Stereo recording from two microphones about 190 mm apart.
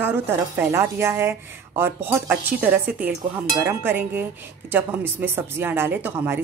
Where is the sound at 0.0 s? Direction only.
10° right (ahead or behind).